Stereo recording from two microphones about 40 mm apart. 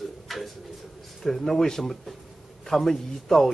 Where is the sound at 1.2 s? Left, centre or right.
Centre.